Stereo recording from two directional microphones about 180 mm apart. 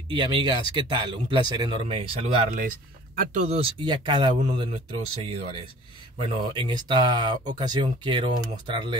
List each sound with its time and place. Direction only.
0.1 s speech: 25° right (ahead or behind)